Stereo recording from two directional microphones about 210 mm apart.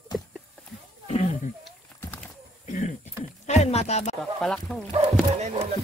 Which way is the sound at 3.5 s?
30° left (ahead or behind).